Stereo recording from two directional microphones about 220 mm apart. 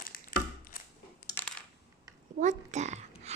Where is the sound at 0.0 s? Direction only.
40° left (ahead or behind).